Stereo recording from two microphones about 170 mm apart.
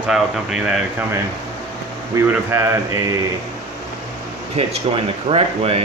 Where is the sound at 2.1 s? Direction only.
15° right (ahead or behind).